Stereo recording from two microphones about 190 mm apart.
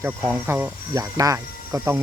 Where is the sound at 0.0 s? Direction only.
10° right (ahead or behind).